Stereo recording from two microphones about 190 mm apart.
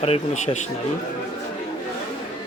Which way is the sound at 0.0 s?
35° left (ahead or behind).